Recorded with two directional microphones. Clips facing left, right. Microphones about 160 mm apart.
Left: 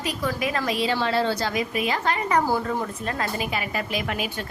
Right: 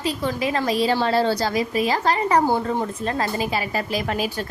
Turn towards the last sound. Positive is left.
turn(degrees=-35)  # may be behind; listen again after turning